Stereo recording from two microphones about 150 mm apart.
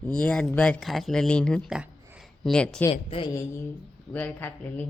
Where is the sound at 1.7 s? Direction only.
5° right (ahead or behind).